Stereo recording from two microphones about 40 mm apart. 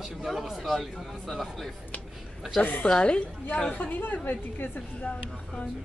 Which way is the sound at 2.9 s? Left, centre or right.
Left.